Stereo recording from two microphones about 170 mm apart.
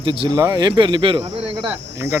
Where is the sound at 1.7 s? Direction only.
15° right (ahead or behind).